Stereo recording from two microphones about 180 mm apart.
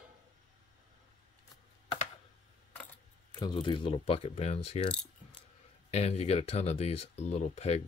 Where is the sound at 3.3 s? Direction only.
25° left (ahead or behind).